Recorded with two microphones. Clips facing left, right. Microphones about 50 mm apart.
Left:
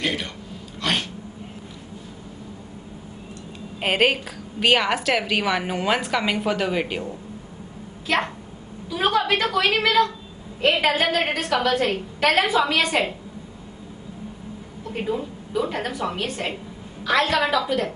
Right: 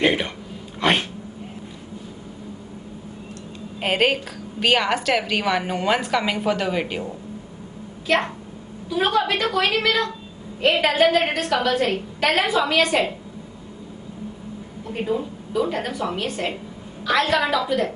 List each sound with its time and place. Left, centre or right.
0.0 s a sound: right
3.8 s a woman's voice: centre
8.8 s a woman's voice: centre
10.6 s a woman's voice: centre
14.9 s a woman's voice: centre